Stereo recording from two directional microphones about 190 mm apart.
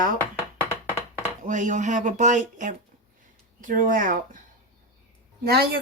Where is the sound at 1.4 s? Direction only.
40° right (ahead or behind).